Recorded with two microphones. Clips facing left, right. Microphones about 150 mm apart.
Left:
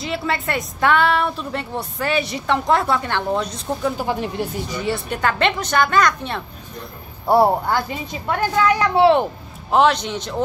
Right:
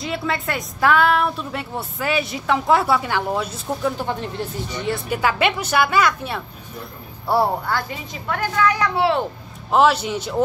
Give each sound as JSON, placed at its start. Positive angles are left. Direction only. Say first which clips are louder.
{"t": 0.0, "sound": "a woman's voice", "louder": "left 1 dB", "side_deg": 0}
{"t": 4.0, "sound": "a woman's voice", "louder": "left 3 dB", "side_deg": 10}
{"t": 7.2, "sound": "speech", "louder": "left 4 dB", "side_deg": 20}
{"t": 9.7, "sound": "a woman's voice", "louder": "even", "side_deg": -5}